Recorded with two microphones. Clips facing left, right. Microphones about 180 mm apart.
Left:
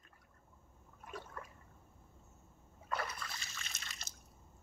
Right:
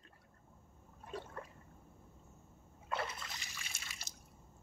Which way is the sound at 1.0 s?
30° right (ahead or behind).